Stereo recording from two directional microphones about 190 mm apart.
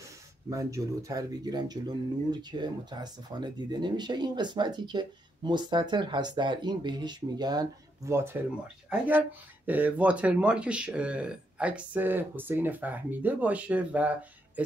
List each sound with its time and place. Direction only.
0.5 s speech: 15° right (ahead or behind)
9.7 s speech: 10° right (ahead or behind)